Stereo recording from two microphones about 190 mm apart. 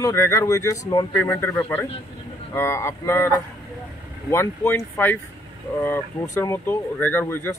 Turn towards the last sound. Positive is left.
turn(degrees=10)  # may be behind; listen again after turning